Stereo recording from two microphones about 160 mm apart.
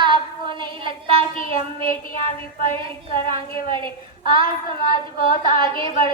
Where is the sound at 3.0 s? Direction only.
60° left (ahead or behind).